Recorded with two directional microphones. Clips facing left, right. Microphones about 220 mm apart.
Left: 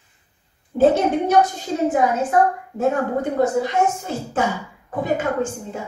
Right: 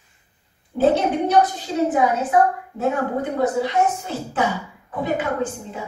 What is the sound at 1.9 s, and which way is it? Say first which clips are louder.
A woman's voice: even; 45° left (ahead or behind).